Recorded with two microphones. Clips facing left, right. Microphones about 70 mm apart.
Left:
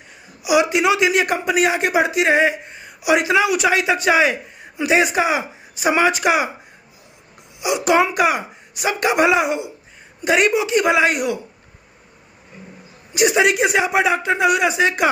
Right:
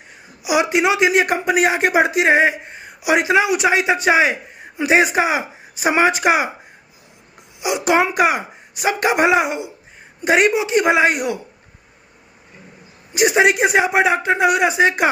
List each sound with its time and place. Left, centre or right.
0.4 s speech: right
7.6 s speech: right
13.1 s speech: right